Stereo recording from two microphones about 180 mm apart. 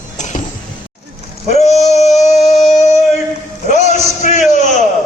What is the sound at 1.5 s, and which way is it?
Male singing, 40° left (ahead or behind).